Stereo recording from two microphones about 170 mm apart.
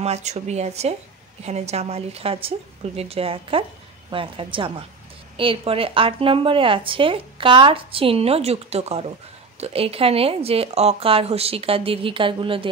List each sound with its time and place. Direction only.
0.0 s speech: 40° right (ahead or behind)